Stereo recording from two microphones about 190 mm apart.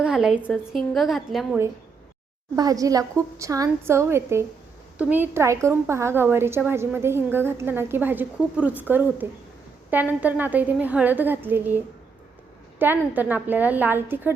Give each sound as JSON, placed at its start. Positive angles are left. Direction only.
{"t": 0.0, "sound": "a woman's voice", "side_deg": -5}
{"t": 2.6, "sound": "a woman's voice", "side_deg": -20}
{"t": 12.8, "sound": "a woman's voice", "side_deg": -10}